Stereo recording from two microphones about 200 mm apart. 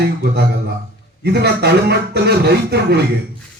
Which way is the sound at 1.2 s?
55° right (ahead or behind).